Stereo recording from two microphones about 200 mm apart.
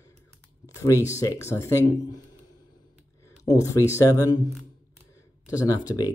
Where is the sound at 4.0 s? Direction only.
15° left (ahead or behind).